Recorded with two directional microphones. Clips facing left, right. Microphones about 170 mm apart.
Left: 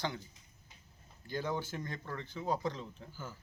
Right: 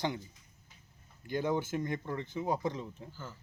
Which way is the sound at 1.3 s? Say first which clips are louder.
Right 5 dB; 20° right (ahead or behind).